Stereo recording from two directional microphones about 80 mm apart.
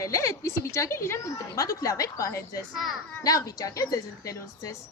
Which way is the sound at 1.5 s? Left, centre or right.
Left.